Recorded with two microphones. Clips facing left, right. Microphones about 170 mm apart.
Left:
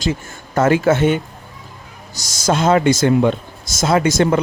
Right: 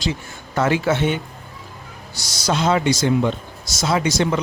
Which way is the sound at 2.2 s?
45° left (ahead or behind).